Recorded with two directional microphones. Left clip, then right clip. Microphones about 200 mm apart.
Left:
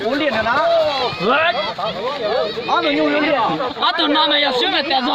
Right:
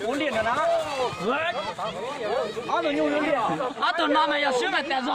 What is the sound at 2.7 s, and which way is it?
Speech, 40° left (ahead or behind).